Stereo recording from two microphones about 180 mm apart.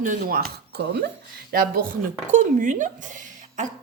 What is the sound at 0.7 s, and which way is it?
Speech, 65° right (ahead or behind).